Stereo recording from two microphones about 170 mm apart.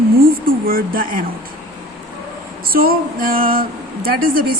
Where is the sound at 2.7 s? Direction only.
60° right (ahead or behind).